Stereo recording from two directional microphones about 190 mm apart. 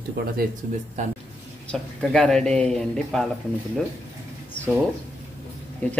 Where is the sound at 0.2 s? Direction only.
60° right (ahead or behind).